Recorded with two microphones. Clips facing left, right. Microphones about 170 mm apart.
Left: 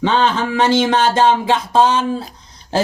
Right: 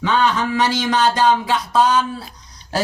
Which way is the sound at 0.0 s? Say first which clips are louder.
Left 2 dB; 25° left (ahead or behind).